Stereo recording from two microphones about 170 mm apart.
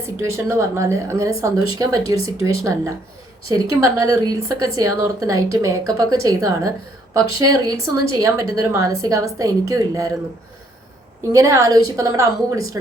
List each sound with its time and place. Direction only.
0.2 s speech: 15° right (ahead or behind)
3.5 s speech: 20° right (ahead or behind)
11.3 s speech: 20° right (ahead or behind)